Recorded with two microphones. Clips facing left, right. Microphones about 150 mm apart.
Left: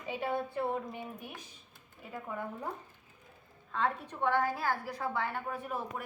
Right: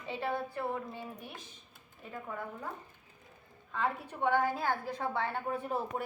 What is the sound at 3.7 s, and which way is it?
Speech, 5° right (ahead or behind).